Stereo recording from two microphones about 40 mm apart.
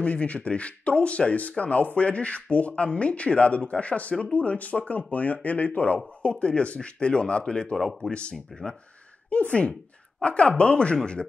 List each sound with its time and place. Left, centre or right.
0.0 s speech: left
6.4 s speech: left
7.7 s speech: centre
8.1 s speech: left
9.3 s speech: left